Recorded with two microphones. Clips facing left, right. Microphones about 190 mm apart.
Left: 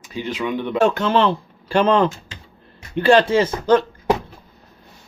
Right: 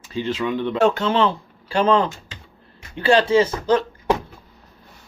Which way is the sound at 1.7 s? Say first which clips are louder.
Left 2 dB; 60° left (ahead or behind).